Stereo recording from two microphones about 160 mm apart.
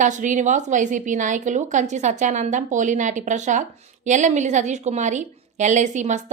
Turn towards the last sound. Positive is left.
turn(degrees=-50)  # may be behind; listen again after turning